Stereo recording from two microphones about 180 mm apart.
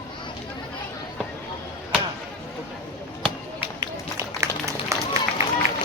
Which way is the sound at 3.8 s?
15° right (ahead or behind).